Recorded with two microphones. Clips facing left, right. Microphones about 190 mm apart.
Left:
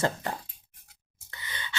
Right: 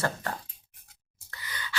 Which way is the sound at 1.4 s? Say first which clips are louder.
Right 1 dB; 25° left (ahead or behind).